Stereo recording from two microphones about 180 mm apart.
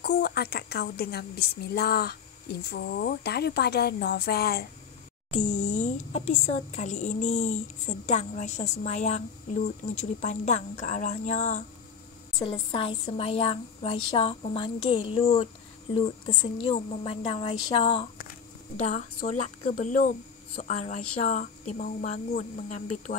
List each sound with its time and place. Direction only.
0.0 s a woman's voice: 60° left (ahead or behind)
5.3 s a woman's voice: 40° left (ahead or behind)
12.4 s a woman's voice: 30° left (ahead or behind)
18.8 s a woman's voice: 40° left (ahead or behind)